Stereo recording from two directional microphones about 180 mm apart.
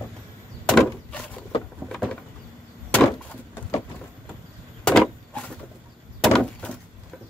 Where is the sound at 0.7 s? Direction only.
5° left (ahead or behind).